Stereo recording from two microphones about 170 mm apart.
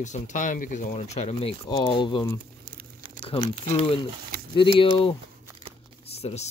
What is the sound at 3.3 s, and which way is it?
Speech, 35° left (ahead or behind).